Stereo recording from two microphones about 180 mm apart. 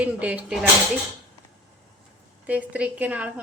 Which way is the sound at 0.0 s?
10° right (ahead or behind).